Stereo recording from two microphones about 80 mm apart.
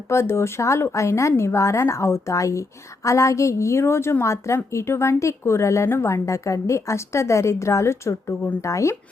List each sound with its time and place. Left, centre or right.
0.1 s a woman's voice: left